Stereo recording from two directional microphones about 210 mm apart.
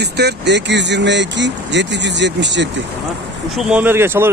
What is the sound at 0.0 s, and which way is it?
Speech, 50° right (ahead or behind).